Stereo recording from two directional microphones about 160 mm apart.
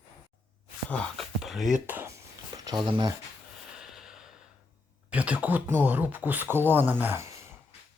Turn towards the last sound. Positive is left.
turn(degrees=-15)  # may be behind; listen again after turning